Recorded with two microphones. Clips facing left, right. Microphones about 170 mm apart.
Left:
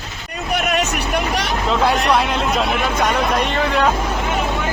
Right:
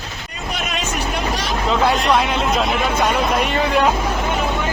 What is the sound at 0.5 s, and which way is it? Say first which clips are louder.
Vehicle: left 5 dB; 60° left (ahead or behind).